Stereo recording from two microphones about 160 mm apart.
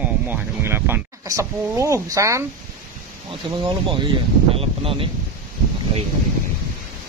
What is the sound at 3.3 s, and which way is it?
Speech, 30° right (ahead or behind).